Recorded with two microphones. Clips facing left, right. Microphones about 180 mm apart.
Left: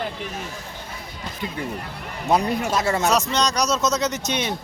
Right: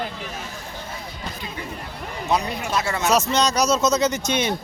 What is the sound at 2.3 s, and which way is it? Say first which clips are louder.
Speech: left 3 dB; 50° left (ahead or behind).